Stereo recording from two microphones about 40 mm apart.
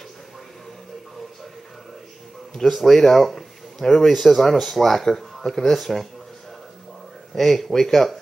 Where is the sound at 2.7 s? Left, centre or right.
Centre.